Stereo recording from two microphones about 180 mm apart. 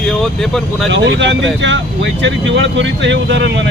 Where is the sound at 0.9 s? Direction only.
80° right.